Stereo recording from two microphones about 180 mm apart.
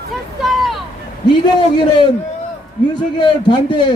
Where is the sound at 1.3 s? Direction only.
25° left (ahead or behind).